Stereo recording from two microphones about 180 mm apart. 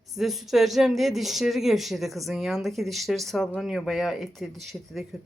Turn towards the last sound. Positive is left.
turn(degrees=0)  # may be behind; listen again after turning